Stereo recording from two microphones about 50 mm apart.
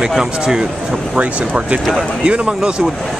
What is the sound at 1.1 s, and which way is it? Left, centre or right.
Speech, right.